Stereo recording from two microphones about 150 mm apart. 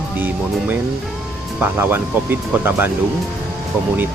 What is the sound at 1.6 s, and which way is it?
Speech, 15° right (ahead or behind).